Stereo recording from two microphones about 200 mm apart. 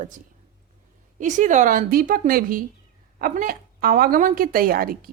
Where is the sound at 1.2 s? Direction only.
40° right (ahead or behind).